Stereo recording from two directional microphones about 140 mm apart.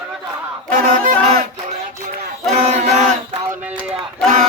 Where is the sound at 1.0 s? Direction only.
65° right (ahead or behind).